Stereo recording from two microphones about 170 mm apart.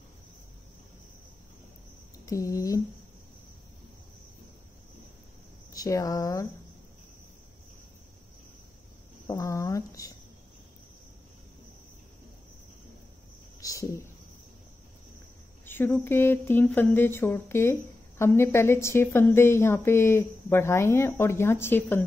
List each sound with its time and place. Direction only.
2.1 s speech: 20° left (ahead or behind)
5.7 s speech: 20° left (ahead or behind)
9.3 s speech: 20° left (ahead or behind)
13.6 s a sound: 20° left (ahead or behind)
15.6 s speech: 10° left (ahead or behind)